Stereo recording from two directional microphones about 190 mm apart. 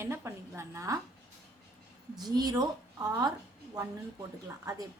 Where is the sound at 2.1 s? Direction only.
20° right (ahead or behind).